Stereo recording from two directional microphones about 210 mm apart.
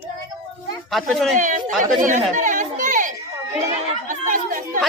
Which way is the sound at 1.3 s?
35° right (ahead or behind).